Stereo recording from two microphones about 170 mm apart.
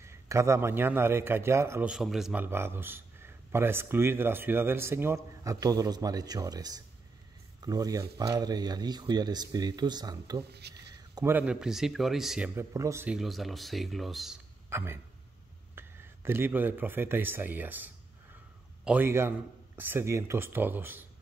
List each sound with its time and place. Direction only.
0.0 s a man's voice: 15° right (ahead or behind)
1.9 s a man's voice: centre (ahead or behind); by 10.4 s 25° right (ahead or behind)
10.5 s speech: 75° right (ahead or behind)
11.0 s a sound: 20° right (ahead or behind)
11.3 s speech: 5° right (ahead or behind)
12.5 s a man's voice: 15° right (ahead or behind)
13.1 s speech: centre (ahead or behind)
14.7 s a man's voice: 15° right (ahead or behind)